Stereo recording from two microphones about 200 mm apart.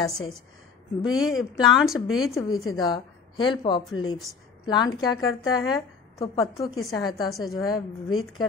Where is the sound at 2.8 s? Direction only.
20° left (ahead or behind).